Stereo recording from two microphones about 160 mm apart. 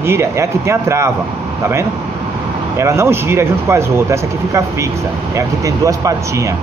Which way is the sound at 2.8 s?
15° right (ahead or behind).